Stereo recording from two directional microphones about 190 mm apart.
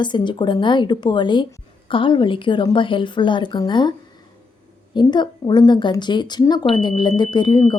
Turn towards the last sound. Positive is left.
turn(degrees=25)  # may be behind; listen again after turning